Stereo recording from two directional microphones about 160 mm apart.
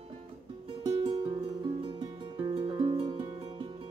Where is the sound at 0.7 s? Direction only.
30° right (ahead or behind).